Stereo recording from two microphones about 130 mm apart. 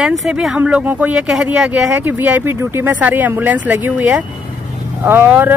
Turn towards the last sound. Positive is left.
turn(degrees=-15)  # may be behind; listen again after turning